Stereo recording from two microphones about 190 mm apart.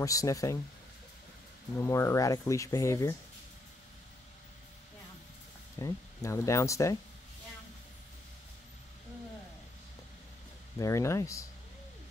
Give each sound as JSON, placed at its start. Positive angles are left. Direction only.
{"t": 0.0, "sound": "speech", "side_deg": 15}
{"t": 1.8, "sound": "speech", "side_deg": 15}
{"t": 5.8, "sound": "speech", "side_deg": 15}
{"t": 10.8, "sound": "speech", "side_deg": 15}